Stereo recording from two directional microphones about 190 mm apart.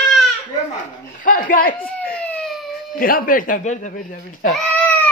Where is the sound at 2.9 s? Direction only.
45° left (ahead or behind).